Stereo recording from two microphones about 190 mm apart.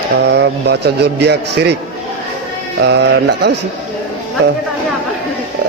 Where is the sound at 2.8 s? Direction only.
65° right (ahead or behind).